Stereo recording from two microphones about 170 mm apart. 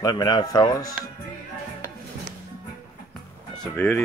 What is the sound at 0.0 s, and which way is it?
Speech, 25° left (ahead or behind).